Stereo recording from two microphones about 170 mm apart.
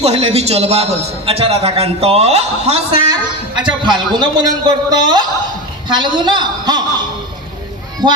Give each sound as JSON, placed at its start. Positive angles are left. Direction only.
{"t": 0.0, "sound": "a man's voice", "side_deg": -35}
{"t": 3.1, "sound": "a man's voice", "side_deg": -25}
{"t": 8.0, "sound": "speech", "side_deg": -25}